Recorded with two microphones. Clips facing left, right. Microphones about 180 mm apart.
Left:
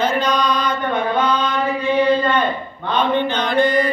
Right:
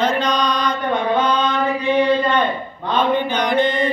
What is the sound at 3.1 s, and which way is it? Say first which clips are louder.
Mantra: even; 10° right (ahead or behind).